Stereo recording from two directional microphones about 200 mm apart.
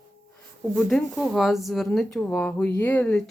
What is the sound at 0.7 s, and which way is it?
Speech, centre (ahead or behind).